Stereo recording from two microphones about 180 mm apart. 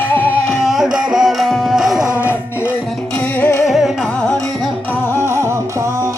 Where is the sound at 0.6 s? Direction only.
Centre (ahead or behind).